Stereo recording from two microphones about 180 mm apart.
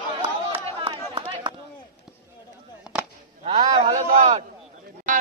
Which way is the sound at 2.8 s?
5° right (ahead or behind).